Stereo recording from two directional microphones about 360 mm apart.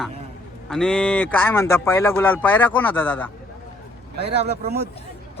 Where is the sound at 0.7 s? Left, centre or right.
Centre.